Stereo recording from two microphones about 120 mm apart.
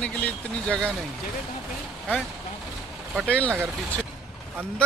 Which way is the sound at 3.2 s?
10° left (ahead or behind).